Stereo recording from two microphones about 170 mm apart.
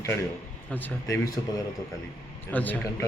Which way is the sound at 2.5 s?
10° left (ahead or behind).